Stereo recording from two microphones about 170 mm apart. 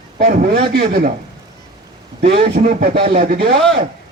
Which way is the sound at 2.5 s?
55° right (ahead or behind).